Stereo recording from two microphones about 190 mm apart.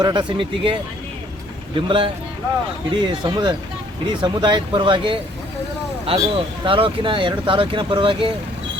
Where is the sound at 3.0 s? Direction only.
25° right (ahead or behind).